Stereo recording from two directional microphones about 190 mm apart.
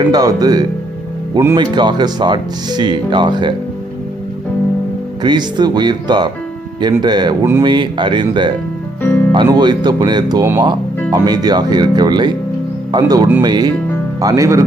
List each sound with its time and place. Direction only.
0.0 s speech: 20° right (ahead or behind)
5.2 s speech: 25° right (ahead or behind)
9.0 s music: 10° left (ahead or behind)
9.3 s speech: 25° right (ahead or behind)